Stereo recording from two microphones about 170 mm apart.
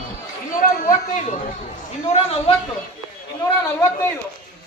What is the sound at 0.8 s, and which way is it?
Speech, 45° left (ahead or behind).